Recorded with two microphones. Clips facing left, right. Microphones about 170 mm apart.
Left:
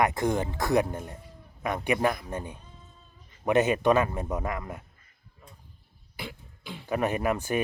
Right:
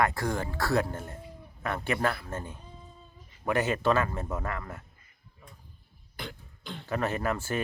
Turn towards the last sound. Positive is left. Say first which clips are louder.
# left 3 dB
turn(degrees=15)  # may be behind; listen again after turning